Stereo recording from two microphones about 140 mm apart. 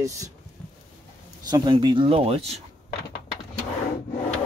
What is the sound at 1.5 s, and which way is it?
Speech, 30° right (ahead or behind).